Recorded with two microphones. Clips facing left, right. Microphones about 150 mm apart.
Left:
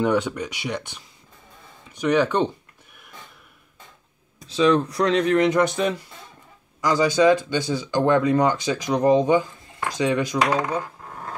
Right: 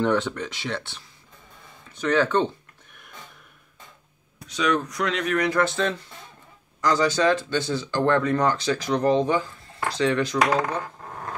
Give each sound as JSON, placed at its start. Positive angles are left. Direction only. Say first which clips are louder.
{"t": 0.0, "sound": "speech", "louder": "left 1 dB", "side_deg": 10}
{"t": 1.9, "sound": "a sound", "louder": "left 2 dB", "side_deg": 15}
{"t": 4.5, "sound": "speech", "louder": "left 6 dB", "side_deg": 30}